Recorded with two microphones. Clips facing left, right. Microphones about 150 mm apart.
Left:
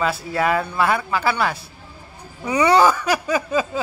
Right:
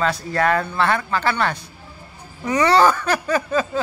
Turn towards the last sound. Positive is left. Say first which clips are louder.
# even
turn(degrees=10)  # may be behind; listen again after turning